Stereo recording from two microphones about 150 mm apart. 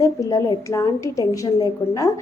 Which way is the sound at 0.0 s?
20° left (ahead or behind).